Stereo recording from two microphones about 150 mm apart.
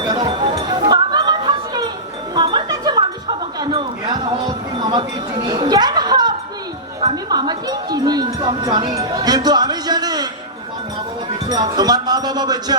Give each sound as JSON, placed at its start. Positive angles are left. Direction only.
{"t": 0.1, "sound": "a sound", "side_deg": -30}
{"t": 2.3, "sound": "music", "side_deg": -30}
{"t": 11.4, "sound": "music", "side_deg": -25}